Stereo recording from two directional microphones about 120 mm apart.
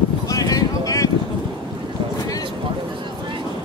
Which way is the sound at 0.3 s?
30° left (ahead or behind).